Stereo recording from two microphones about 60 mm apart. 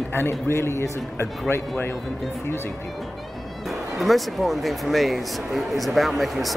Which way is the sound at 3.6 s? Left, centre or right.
Centre.